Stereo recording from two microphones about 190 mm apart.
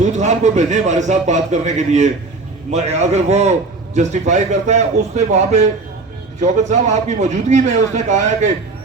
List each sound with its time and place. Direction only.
0.0 s a man's voice: 40° right (ahead or behind)